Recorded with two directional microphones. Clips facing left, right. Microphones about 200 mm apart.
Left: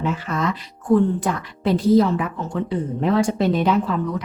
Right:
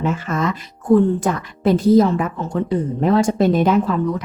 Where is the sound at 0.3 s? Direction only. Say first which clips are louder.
Right 2 dB; 45° right (ahead or behind).